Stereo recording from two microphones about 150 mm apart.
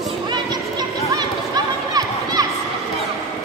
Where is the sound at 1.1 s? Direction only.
25° right (ahead or behind).